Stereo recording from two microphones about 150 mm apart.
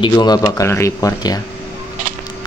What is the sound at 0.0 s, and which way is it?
A man's voice, 30° left (ahead or behind).